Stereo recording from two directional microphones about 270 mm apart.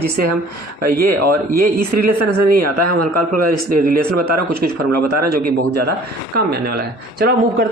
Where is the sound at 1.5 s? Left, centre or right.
Right.